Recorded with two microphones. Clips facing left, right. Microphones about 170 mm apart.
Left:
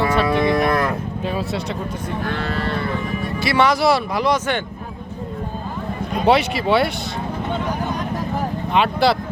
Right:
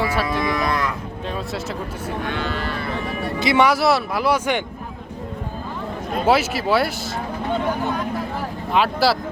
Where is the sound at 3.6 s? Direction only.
5° right (ahead or behind).